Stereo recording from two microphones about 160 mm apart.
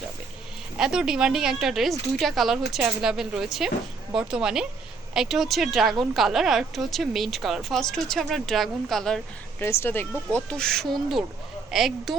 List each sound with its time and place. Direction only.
0.8 s speech: 5° right (ahead or behind)
9.6 s speech: 15° left (ahead or behind); by 12.1 s centre (ahead or behind)